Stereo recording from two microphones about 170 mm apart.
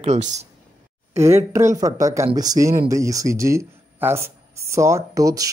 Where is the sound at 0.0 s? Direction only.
45° right (ahead or behind).